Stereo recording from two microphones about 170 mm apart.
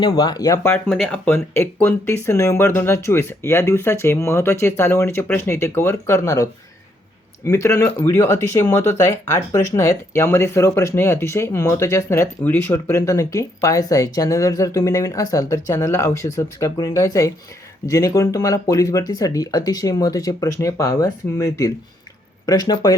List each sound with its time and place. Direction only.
0.0 s speech: 25° left (ahead or behind)
0.9 s speech: 5° left (ahead or behind); by 23.0 s 20° left (ahead or behind)